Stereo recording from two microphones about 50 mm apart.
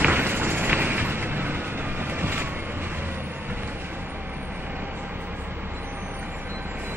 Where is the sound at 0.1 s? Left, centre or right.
Right.